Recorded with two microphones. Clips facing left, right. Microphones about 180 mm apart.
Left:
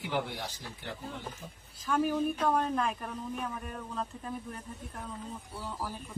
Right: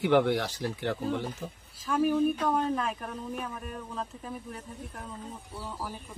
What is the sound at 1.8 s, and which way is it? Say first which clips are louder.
Speech: right 4 dB; 5° right (ahead or behind).